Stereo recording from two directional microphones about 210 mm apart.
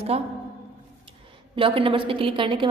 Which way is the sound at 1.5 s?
25° right (ahead or behind).